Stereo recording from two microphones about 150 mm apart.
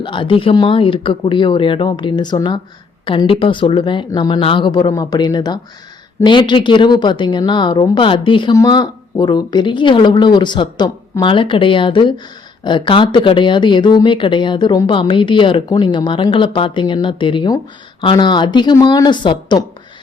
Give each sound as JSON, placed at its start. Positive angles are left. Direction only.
{"t": 0.0, "sound": "speech", "side_deg": 35}